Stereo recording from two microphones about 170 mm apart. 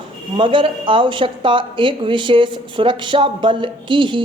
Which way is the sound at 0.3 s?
30° right (ahead or behind).